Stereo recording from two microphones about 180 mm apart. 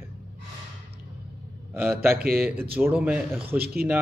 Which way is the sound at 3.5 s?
60° right (ahead or behind).